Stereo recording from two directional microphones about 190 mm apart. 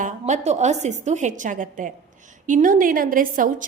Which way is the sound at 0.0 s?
35° right (ahead or behind).